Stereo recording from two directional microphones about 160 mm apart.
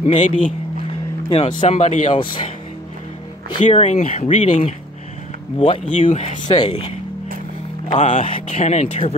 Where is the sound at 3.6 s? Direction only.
35° left (ahead or behind).